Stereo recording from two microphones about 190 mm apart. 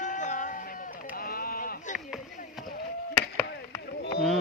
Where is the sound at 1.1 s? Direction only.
50° left (ahead or behind).